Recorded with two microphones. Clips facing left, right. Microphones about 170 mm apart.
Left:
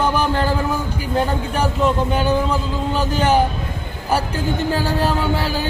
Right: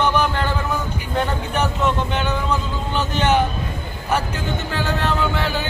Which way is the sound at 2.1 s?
35° left (ahead or behind).